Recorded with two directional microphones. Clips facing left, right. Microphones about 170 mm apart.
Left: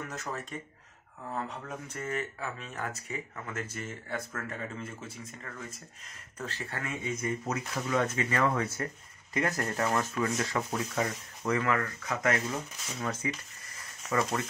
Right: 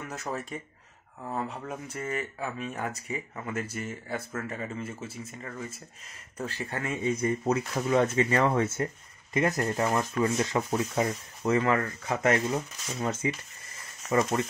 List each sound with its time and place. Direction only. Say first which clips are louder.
0.1 s speech: right 3 dB; 10° right (ahead or behind)
6.8 s speech: right 6 dB; 30° right (ahead or behind)